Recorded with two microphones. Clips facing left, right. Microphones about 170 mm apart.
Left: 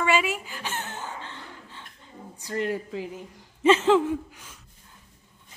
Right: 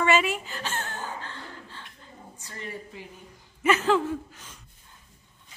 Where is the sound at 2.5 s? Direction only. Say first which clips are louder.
Left 11 dB; 75° left (ahead or behind).